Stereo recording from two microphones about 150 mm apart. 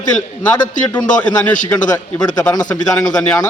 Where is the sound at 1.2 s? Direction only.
10° left (ahead or behind).